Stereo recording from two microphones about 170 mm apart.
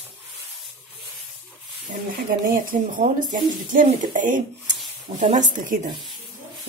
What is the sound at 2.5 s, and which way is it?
Speech, 50° right (ahead or behind).